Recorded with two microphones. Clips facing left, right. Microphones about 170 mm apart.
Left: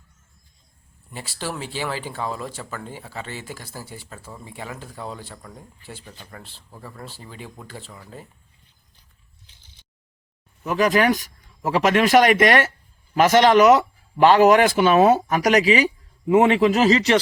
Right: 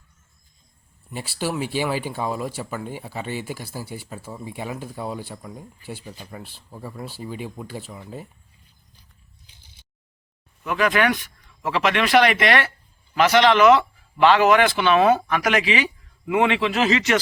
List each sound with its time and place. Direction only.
1.1 s speech: 10° right (ahead or behind)
10.6 s speech: 40° left (ahead or behind)